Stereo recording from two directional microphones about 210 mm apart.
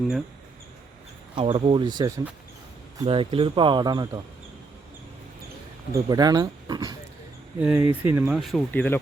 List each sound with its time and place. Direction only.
1.4 s speech: 25° right (ahead or behind)
3.0 s speech: 25° right (ahead or behind)
5.9 s speech: 15° right (ahead or behind)
7.6 s speech: 5° right (ahead or behind)
8.4 s speech: centre (ahead or behind)